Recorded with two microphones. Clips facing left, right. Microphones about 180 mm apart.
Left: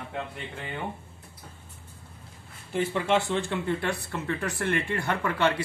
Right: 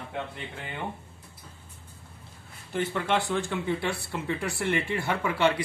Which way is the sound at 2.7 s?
5° left (ahead or behind).